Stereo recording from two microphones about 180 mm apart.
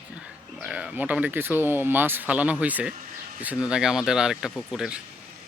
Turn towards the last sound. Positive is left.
turn(degrees=0)  # may be behind; listen again after turning